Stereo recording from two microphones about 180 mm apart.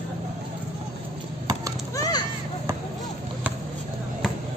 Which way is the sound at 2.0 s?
20° left (ahead or behind).